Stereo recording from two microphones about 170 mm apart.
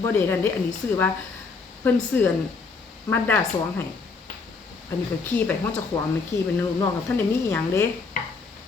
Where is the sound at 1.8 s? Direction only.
10° left (ahead or behind).